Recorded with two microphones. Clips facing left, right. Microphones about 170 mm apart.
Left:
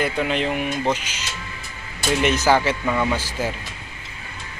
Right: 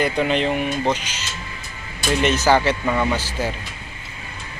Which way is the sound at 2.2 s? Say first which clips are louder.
Right 1 dB; 10° left (ahead or behind).